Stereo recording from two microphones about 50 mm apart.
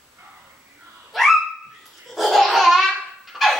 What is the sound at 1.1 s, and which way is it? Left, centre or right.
Dog, centre.